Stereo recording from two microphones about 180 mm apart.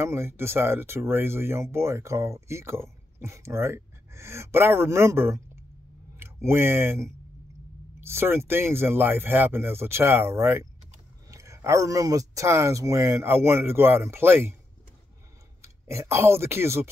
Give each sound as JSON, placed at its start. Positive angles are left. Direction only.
{"t": 0.0, "sound": "speech", "side_deg": -15}
{"t": 15.6, "sound": "speech", "side_deg": -15}